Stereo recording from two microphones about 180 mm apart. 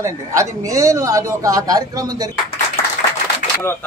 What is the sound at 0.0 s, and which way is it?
A man's voice, 15° right (ahead or behind).